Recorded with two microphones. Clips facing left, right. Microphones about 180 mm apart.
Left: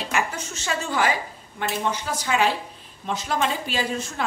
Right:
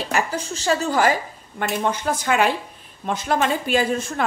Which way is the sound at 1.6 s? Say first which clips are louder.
Right 3 dB; 55° right (ahead or behind).